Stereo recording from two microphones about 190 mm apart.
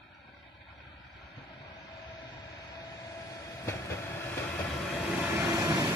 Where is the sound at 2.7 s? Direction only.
20° left (ahead or behind).